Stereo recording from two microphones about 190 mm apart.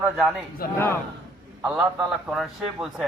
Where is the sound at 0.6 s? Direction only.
50° left (ahead or behind).